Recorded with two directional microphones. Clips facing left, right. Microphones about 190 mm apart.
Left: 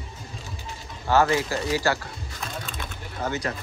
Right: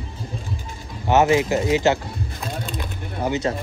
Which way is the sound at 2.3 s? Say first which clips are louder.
Right 3 dB; 30° right (ahead or behind).